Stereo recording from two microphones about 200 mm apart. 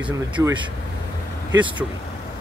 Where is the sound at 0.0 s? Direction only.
15° right (ahead or behind).